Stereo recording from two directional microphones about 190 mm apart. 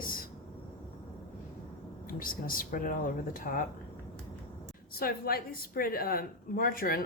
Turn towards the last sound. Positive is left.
turn(degrees=50)  # may be behind; listen again after turning